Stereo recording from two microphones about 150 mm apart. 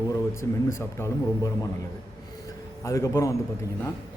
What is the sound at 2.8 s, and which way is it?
Speech, 20° left (ahead or behind).